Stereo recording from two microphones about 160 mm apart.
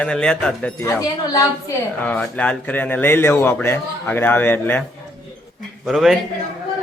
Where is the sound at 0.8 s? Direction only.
25° left (ahead or behind).